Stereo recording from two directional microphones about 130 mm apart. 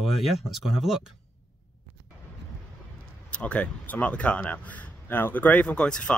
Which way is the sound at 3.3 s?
10° left (ahead or behind).